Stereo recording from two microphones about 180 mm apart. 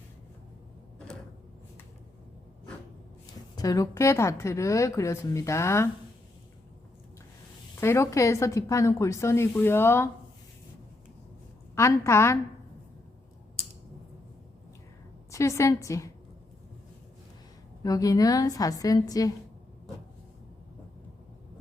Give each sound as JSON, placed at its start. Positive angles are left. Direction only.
{"t": 3.5, "sound": "a woman's voice", "side_deg": 20}
{"t": 7.8, "sound": "a woman's voice", "side_deg": 15}
{"t": 11.7, "sound": "a woman's voice", "side_deg": 15}
{"t": 15.3, "sound": "a woman's voice", "side_deg": 15}
{"t": 17.8, "sound": "a woman's voice", "side_deg": 20}